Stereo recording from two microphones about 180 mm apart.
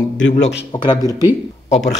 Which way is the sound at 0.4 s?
85° left.